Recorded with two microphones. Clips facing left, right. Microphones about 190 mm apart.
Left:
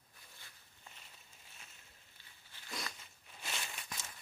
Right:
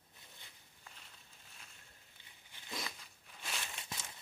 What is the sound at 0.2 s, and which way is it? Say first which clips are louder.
Walk: right 1 dB; 20° right (ahead or behind).